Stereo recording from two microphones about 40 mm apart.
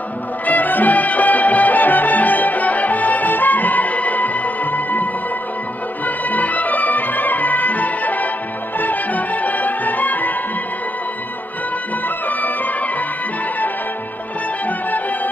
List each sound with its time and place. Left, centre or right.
0.5 s music: left
12.3 s music: left